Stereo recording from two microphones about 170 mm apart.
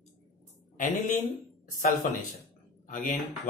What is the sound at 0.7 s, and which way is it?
Speech, 50° left (ahead or behind).